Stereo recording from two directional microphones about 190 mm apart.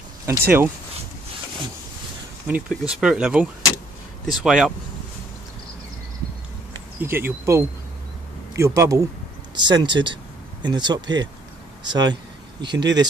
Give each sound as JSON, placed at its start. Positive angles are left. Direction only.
{"t": 0.3, "sound": "speech", "side_deg": -10}
{"t": 2.4, "sound": "speech", "side_deg": -5}
{"t": 7.0, "sound": "speech", "side_deg": -10}